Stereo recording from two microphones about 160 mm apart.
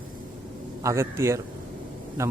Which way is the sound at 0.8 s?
15° right (ahead or behind).